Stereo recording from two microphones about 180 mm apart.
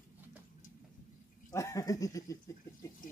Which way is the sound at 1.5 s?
15° left (ahead or behind).